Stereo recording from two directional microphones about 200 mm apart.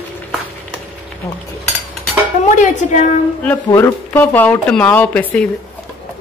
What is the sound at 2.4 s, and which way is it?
Speech, 35° left (ahead or behind).